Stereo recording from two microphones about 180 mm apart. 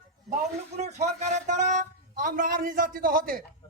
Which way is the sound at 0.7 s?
40° right (ahead or behind).